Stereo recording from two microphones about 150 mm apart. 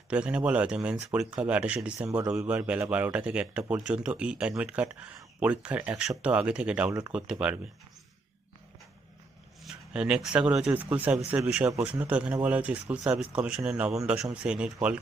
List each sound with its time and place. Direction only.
0.1 s speech: 10° right (ahead or behind)
9.6 s speech: 5° right (ahead or behind)